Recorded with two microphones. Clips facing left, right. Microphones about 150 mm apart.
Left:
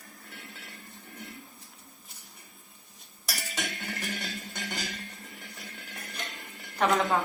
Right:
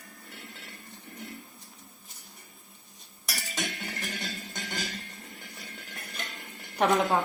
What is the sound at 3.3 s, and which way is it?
Music, centre (ahead or behind).